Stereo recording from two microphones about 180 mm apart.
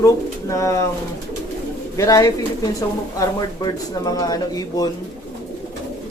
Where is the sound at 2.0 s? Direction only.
20° left (ahead or behind).